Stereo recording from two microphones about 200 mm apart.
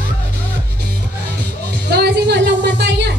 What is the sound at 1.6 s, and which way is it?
Music, 50° right (ahead or behind).